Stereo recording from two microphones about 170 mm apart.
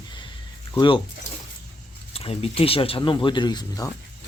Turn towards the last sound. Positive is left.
turn(degrees=20)  # may be behind; listen again after turning